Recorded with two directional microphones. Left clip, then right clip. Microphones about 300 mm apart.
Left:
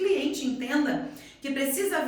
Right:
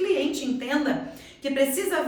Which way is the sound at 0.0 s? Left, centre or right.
Centre.